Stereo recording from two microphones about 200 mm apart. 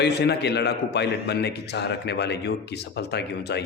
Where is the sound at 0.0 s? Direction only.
55° left (ahead or behind).